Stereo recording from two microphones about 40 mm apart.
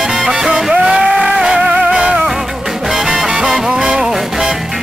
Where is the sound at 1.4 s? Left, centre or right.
Centre.